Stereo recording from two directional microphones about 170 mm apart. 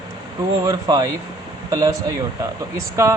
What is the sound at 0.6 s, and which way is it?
A man's voice, 25° right (ahead or behind).